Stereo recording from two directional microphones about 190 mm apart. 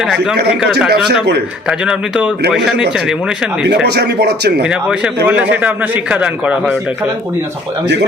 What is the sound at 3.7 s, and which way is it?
Speech, 60° right (ahead or behind).